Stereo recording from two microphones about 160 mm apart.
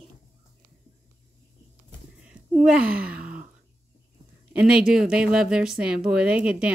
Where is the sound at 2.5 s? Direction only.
5° right (ahead or behind).